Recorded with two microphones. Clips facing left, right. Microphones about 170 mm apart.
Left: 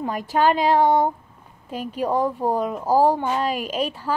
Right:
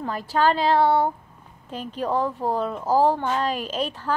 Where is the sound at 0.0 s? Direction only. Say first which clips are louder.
Left 2 dB; 15° left (ahead or behind).